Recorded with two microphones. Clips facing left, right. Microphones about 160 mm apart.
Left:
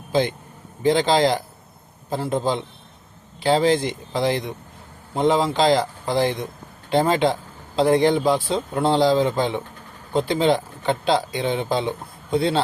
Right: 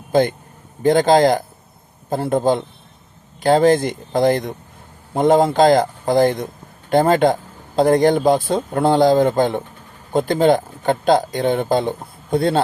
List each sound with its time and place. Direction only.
0.1 s a man's voice: 50° right (ahead or behind)